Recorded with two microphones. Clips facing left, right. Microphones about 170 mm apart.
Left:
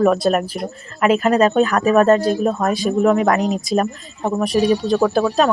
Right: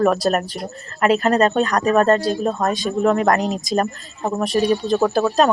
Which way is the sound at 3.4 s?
Centre (ahead or behind).